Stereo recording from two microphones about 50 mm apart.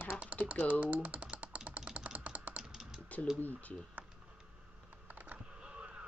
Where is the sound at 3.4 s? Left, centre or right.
Left.